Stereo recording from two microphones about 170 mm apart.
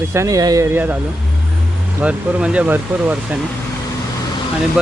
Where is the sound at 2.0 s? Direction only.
5° right (ahead or behind).